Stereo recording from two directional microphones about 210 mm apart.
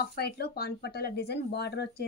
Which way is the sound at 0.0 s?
50° left (ahead or behind).